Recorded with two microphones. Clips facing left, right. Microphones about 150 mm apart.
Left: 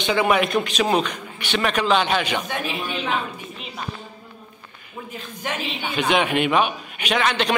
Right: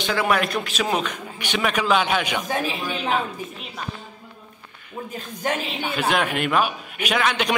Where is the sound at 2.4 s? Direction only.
40° right (ahead or behind).